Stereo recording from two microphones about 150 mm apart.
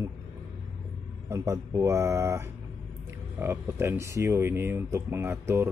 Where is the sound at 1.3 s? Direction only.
20° right (ahead or behind).